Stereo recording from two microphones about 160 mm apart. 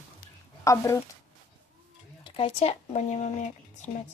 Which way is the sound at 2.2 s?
35° left (ahead or behind).